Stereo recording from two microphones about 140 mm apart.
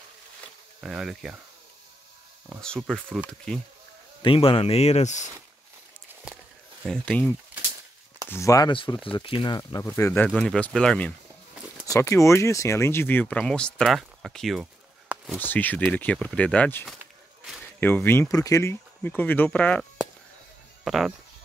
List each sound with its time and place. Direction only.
0.7 s speech: 5° right (ahead or behind)
2.6 s speech: 5° left (ahead or behind)
4.2 s speech: 40° left (ahead or behind); by 5.3 s 60° left (ahead or behind)
6.9 s speech: 10° left (ahead or behind)
8.3 s speech: 20° left (ahead or behind)
8.7 s speech: 35° left (ahead or behind); by 10.2 s 20° left (ahead or behind)
10.2 s speech: 5° left (ahead or behind)
11.8 s speech: 20° left (ahead or behind); by 14.7 s centre (ahead or behind)
15.3 s speech: 15° left (ahead or behind)
20.8 s speech: centre (ahead or behind)